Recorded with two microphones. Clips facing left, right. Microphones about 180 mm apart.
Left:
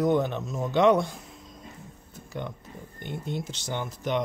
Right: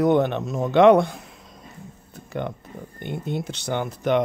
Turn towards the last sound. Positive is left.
turn(degrees=-60)  # may be behind; listen again after turning